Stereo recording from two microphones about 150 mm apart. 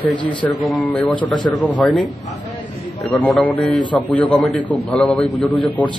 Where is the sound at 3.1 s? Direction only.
15° left (ahead or behind).